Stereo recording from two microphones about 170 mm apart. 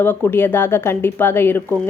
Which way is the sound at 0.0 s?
10° left (ahead or behind).